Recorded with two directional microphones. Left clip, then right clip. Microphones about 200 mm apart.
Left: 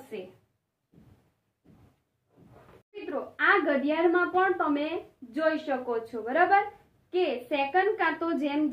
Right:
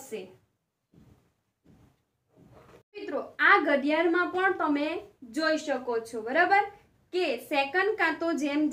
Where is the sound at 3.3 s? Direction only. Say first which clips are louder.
Right 2 dB; 5° left (ahead or behind).